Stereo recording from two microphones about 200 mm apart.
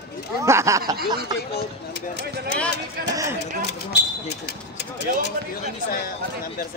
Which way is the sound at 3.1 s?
15° right (ahead or behind).